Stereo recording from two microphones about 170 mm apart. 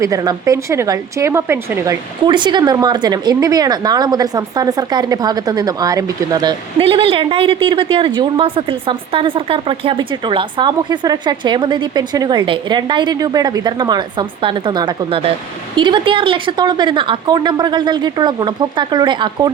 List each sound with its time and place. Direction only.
0.0 s a woman's voice: 20° right (ahead or behind)